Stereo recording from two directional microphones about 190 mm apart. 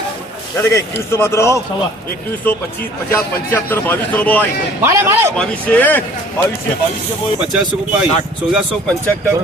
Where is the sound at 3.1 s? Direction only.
10° left (ahead or behind).